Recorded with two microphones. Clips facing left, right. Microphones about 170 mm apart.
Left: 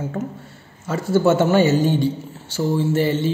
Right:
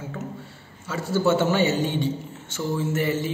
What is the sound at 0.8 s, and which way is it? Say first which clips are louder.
A man's voice: left 5 dB; 50° left (ahead or behind).